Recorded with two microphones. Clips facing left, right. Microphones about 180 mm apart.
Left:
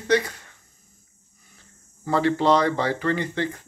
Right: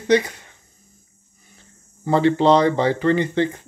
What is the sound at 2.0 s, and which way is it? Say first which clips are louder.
Speech: right 5 dB; 25° right (ahead or behind).